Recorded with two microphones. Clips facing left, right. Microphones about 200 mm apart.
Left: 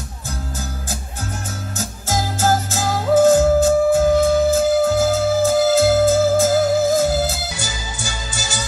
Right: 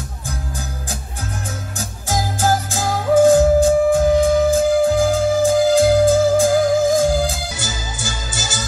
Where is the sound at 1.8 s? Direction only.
15° right (ahead or behind).